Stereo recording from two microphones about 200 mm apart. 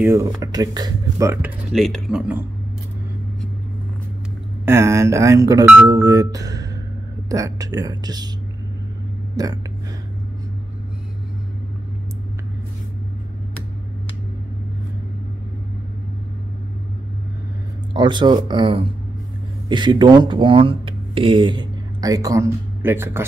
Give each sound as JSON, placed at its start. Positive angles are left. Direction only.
{"t": 0.1, "sound": "speech", "side_deg": -15}
{"t": 1.7, "sound": "speech", "side_deg": 0}
{"t": 4.6, "sound": "speech", "side_deg": -15}
{"t": 9.4, "sound": "speech", "side_deg": -20}
{"t": 17.9, "sound": "speech", "side_deg": -25}